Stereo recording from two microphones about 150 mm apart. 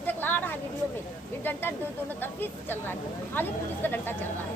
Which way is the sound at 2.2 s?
15° left (ahead or behind).